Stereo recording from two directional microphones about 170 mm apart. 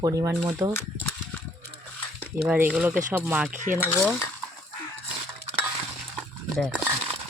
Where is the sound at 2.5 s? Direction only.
5° right (ahead or behind).